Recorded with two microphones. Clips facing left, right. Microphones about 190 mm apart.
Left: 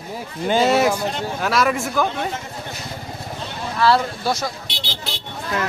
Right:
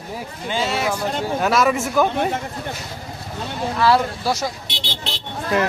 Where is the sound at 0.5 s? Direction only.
45° left (ahead or behind).